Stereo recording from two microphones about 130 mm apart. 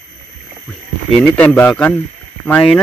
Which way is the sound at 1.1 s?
5° left (ahead or behind).